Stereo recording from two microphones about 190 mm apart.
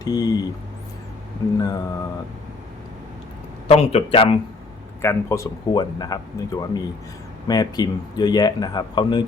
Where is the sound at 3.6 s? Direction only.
35° left (ahead or behind).